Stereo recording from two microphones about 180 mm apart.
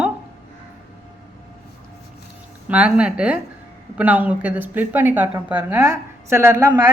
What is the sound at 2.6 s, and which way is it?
Speech, 5° right (ahead or behind).